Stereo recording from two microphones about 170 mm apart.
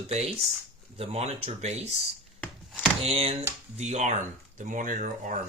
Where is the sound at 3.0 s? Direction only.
35° right (ahead or behind); by 5.4 s 50° right (ahead or behind).